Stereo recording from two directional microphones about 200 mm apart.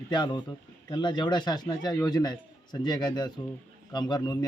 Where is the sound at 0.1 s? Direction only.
25° left (ahead or behind).